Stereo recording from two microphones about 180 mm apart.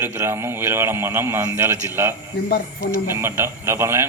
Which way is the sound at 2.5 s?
55° left (ahead or behind).